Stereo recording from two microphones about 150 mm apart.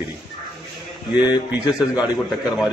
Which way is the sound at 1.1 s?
30° left (ahead or behind).